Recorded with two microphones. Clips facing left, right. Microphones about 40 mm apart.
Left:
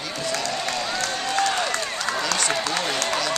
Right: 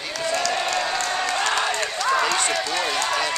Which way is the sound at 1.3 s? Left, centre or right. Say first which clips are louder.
Left 2 dB; right.